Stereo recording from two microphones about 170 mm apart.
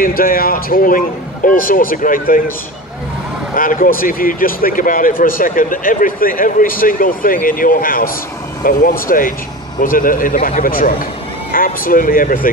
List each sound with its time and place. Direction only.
0.0 s speech: 55° left (ahead or behind)
3.5 s speech: 55° left (ahead or behind)